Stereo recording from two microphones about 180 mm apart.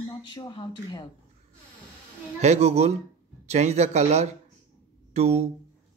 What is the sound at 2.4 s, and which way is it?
Speech, 40° right (ahead or behind).